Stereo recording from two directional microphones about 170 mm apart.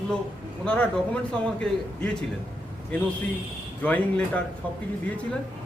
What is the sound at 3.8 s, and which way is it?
Speech, 10° left (ahead or behind).